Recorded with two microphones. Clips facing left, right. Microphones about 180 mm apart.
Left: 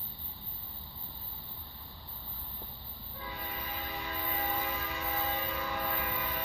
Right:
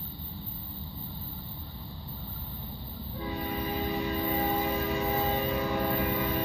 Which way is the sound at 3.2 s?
30° right (ahead or behind).